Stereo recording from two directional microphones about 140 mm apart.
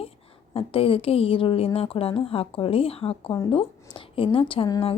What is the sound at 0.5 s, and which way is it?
A woman's voice, 40° left (ahead or behind).